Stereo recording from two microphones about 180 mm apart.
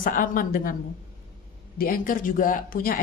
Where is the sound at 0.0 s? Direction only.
50° left (ahead or behind).